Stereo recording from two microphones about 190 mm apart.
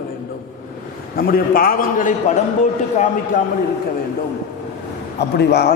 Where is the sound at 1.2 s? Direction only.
50° left (ahead or behind).